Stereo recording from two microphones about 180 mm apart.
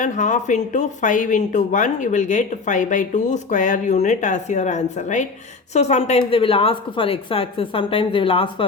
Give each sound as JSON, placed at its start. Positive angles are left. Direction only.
{"t": 0.0, "sound": "a woman's voice", "side_deg": 45}